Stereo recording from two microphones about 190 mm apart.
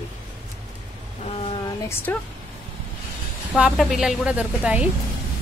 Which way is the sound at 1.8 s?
10° left (ahead or behind).